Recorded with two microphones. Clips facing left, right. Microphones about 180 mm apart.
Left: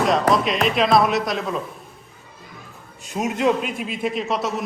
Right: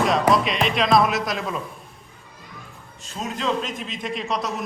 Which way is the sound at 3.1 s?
20° left (ahead or behind).